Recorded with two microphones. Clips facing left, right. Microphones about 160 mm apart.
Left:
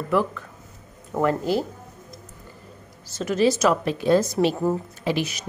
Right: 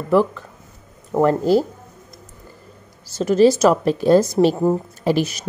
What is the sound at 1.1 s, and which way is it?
Speech, 35° right (ahead or behind).